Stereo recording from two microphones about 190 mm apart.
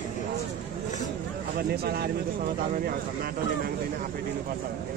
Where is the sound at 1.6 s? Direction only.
55° right (ahead or behind).